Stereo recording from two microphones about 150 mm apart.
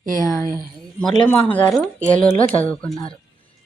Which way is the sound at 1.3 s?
10° left (ahead or behind).